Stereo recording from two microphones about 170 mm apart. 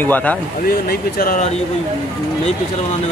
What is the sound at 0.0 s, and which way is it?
Speech, 10° left (ahead or behind).